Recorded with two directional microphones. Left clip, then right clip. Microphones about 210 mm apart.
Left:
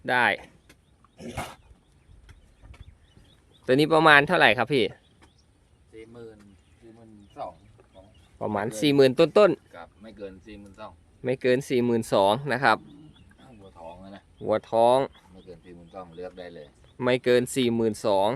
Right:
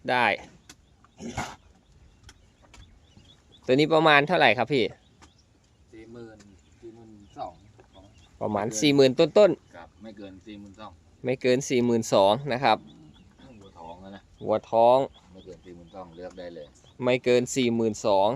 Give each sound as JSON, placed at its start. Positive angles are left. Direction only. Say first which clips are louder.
{"t": 0.0, "sound": "speech", "louder": "left 1 dB", "side_deg": 5}
{"t": 1.1, "sound": "roaring cats", "louder": "right 1 dB", "side_deg": 20}
{"t": 3.7, "sound": "speech", "louder": "left 2 dB", "side_deg": 10}
{"t": 8.4, "sound": "speech", "louder": "right 1 dB", "side_deg": 5}
{"t": 9.7, "sound": "a sound", "louder": "left 1 dB", "side_deg": 50}
{"t": 11.2, "sound": "speech", "louder": "even", "side_deg": 5}
{"t": 14.4, "sound": "speech", "louder": "right 1 dB", "side_deg": 15}
{"t": 15.4, "sound": "speech", "louder": "right 1 dB", "side_deg": 55}
{"t": 17.0, "sound": "speech", "louder": "even", "side_deg": 10}